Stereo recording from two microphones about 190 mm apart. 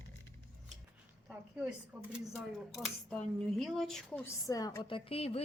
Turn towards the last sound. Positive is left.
turn(degrees=30)  # may be behind; listen again after turning